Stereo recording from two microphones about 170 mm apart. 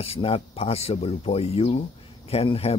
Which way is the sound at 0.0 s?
35° left (ahead or behind).